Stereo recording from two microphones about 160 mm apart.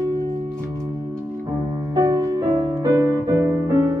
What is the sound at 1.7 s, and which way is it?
Music, 25° right (ahead or behind).